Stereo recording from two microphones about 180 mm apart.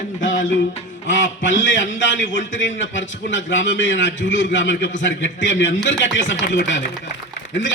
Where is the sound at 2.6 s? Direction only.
90° left.